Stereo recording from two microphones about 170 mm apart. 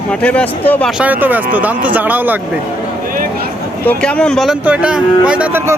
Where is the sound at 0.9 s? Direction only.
5° right (ahead or behind).